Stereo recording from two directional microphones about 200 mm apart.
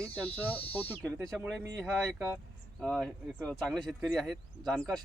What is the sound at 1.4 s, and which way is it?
Speech, 15° right (ahead or behind).